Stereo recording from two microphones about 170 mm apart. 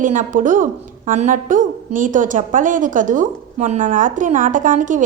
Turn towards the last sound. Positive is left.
turn(degrees=-50)  # may be behind; listen again after turning